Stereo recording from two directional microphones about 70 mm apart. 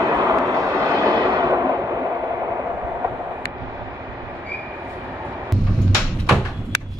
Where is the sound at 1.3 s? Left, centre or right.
Right.